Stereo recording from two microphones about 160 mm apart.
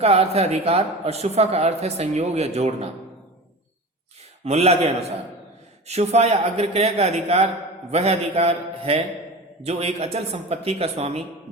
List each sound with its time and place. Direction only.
0.0 s speech: 40° right (ahead or behind)
4.4 s speech: 40° right (ahead or behind)